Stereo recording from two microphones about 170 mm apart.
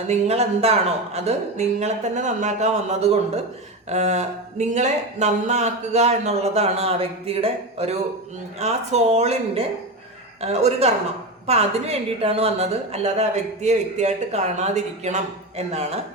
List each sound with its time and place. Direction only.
0.1 s a woman's voice: 40° right (ahead or behind)